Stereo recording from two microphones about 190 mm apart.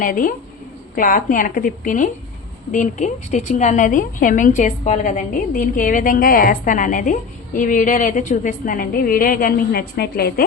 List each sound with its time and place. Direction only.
0.0 s a woman's voice: 45° left (ahead or behind)